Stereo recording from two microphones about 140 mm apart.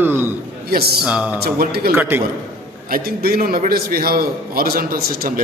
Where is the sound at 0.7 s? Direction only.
90° right.